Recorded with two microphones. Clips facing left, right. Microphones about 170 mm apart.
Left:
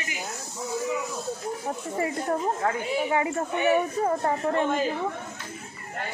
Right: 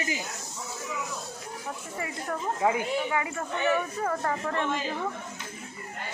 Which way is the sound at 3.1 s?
30° left (ahead or behind).